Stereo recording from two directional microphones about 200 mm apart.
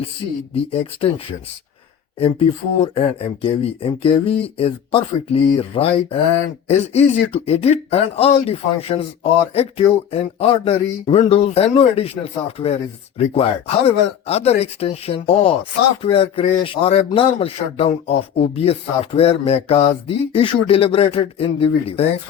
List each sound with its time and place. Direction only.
0.5 s speech: 30° left (ahead or behind)
2.1 s speech: 25° left (ahead or behind)